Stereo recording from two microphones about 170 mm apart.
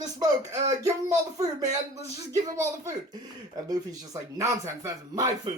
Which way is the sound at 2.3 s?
15° right (ahead or behind).